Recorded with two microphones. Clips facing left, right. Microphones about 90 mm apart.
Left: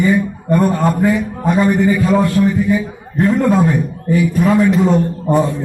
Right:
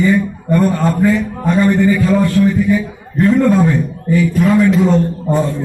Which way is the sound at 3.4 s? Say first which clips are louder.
Right 1 dB; 15° left (ahead or behind).